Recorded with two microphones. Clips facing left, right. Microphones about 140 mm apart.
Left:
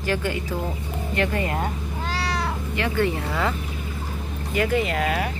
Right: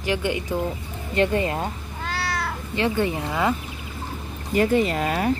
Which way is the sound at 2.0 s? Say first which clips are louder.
Even; 5° right (ahead or behind).